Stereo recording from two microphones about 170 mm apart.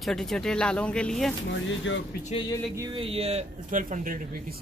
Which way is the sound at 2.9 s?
35° right (ahead or behind).